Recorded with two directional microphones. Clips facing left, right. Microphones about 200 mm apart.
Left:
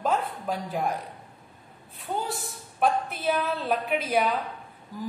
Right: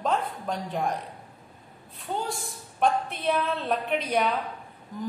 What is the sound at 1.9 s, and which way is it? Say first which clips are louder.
A woman's voice: even; 5° left (ahead or behind).